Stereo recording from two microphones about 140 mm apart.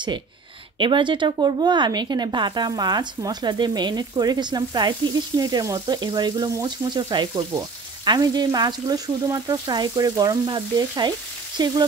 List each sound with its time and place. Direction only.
0.7 s speech: 35° right (ahead or behind)